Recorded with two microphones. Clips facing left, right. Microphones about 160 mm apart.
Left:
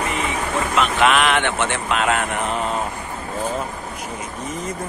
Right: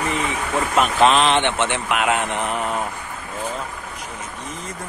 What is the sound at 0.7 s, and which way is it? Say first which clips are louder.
Speech: right 2 dB; 30° right (ahead or behind).